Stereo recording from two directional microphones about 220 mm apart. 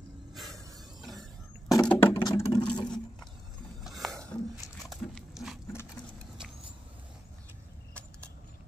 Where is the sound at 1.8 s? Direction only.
5° left (ahead or behind).